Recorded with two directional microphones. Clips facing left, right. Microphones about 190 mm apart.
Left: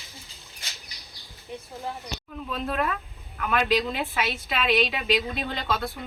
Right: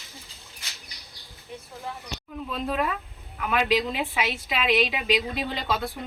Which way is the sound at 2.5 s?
10° right (ahead or behind).